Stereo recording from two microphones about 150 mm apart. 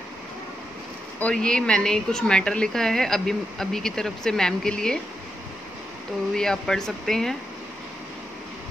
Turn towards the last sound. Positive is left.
turn(degrees=5)  # may be behind; listen again after turning